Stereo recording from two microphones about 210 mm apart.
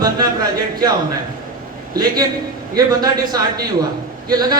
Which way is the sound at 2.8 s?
20° right (ahead or behind).